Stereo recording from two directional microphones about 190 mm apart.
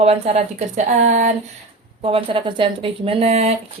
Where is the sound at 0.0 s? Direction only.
35° right (ahead or behind).